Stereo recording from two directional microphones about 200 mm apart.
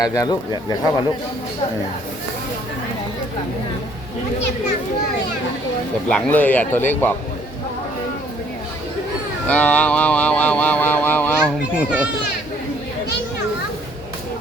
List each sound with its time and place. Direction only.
0.0 s speech: 20° left (ahead or behind)
6.1 s speech: 5° left (ahead or behind)
9.5 s mantra: 5° left (ahead or behind)
11.8 s a child's voice: 5° right (ahead or behind)